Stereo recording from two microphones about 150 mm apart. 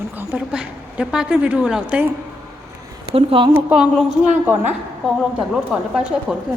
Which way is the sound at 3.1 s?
35° right (ahead or behind).